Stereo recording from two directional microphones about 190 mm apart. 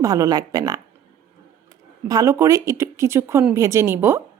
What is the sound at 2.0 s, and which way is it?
Speech, 15° right (ahead or behind).